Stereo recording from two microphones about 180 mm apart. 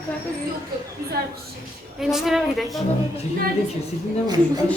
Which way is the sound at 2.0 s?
Centre (ahead or behind).